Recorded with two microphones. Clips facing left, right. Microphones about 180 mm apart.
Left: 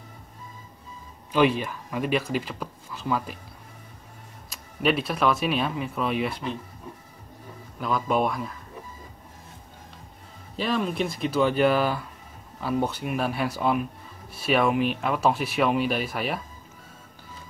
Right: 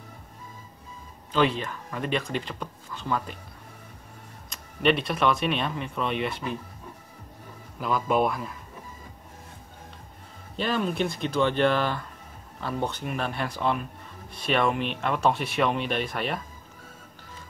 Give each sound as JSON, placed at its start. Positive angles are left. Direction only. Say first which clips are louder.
{"t": 1.3, "sound": "speech", "louder": "left 3 dB", "side_deg": 10}
{"t": 4.5, "sound": "speech", "louder": "right 1 dB", "side_deg": 5}
{"t": 7.8, "sound": "speech", "louder": "even", "side_deg": 0}
{"t": 10.5, "sound": "speech", "louder": "left 1 dB", "side_deg": 0}